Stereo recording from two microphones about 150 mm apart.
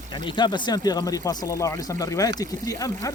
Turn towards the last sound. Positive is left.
turn(degrees=20)  # may be behind; listen again after turning